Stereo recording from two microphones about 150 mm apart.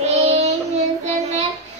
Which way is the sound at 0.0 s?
45° right (ahead or behind).